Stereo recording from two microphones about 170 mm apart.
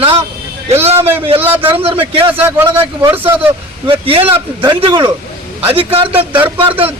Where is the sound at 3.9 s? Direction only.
35° right (ahead or behind).